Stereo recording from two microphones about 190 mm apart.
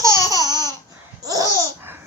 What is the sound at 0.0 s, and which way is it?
Laughter, 15° right (ahead or behind).